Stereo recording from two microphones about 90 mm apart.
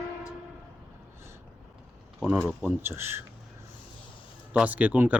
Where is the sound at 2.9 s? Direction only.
25° right (ahead or behind).